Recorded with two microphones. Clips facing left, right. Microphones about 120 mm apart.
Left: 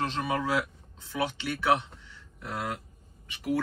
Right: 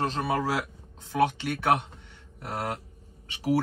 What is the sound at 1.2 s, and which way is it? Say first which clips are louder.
Speech: right 5 dB; 50° right (ahead or behind).